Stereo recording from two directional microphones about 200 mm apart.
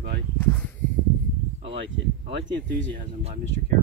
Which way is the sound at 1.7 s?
60° right (ahead or behind).